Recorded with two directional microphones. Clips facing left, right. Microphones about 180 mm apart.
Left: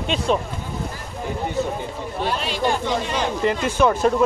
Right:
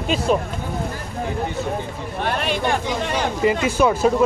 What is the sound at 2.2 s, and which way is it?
Speech, 55° right (ahead or behind).